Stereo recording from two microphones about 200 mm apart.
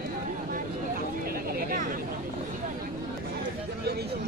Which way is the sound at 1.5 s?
45° right (ahead or behind).